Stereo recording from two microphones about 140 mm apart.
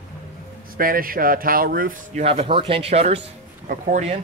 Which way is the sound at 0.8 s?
90° right.